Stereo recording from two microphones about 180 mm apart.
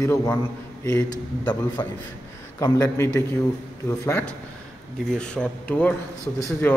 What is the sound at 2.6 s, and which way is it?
A man's voice, 15° left (ahead or behind).